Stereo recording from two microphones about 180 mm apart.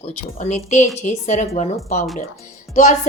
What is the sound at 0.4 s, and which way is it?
Speech, 40° left (ahead or behind).